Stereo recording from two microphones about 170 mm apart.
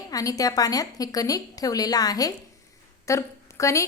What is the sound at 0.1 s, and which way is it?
A woman's voice, 20° left (ahead or behind).